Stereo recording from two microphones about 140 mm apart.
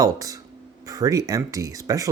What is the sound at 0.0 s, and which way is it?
Speech, 25° right (ahead or behind).